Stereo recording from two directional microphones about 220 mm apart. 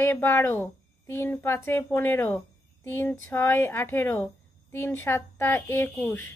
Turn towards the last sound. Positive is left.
turn(degrees=10)  # may be behind; listen again after turning